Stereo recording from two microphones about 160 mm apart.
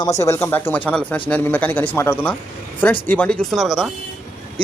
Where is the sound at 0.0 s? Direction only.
20° left (ahead or behind).